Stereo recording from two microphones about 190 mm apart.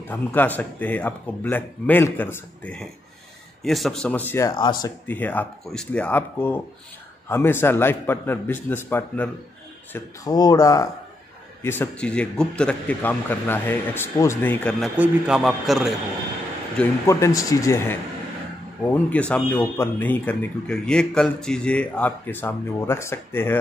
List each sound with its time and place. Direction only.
0.1 s speech: 10° left (ahead or behind)
5.0 s a man's voice: 10° left (ahead or behind)
17.0 s speech: 15° left (ahead or behind)
19.0 s speech: 5° left (ahead or behind)